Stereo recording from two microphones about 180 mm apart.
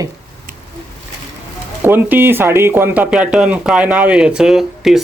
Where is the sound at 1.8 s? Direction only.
10° right (ahead or behind).